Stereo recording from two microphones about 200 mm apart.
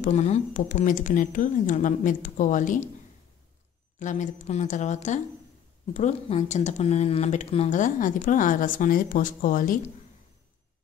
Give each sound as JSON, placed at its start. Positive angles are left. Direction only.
{"t": 0.0, "sound": "speech", "side_deg": 35}
{"t": 4.0, "sound": "speech", "side_deg": 40}